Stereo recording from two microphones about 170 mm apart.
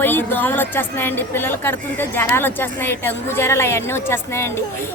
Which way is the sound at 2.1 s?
15° left (ahead or behind).